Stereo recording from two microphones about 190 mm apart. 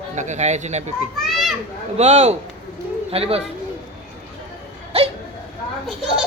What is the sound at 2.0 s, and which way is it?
Speech, 35° right (ahead or behind).